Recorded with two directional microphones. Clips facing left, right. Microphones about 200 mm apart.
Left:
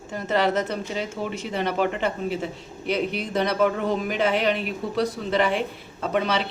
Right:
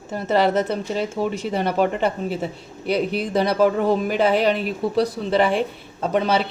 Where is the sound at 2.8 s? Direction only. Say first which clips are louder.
Right 4 dB; 35° right (ahead or behind).